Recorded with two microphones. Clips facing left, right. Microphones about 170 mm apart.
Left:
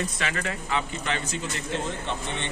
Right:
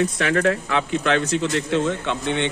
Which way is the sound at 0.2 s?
65° right (ahead or behind).